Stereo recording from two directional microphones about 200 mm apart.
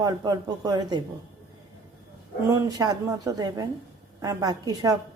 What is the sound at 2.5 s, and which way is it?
Speech, 20° right (ahead or behind).